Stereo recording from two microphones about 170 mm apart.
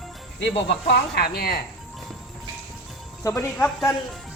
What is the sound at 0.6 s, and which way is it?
Speech, 80° left.